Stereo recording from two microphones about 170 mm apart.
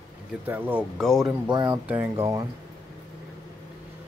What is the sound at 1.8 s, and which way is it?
Speech, 10° right (ahead or behind).